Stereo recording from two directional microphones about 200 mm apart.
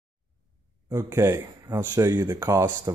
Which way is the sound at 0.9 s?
15° right (ahead or behind).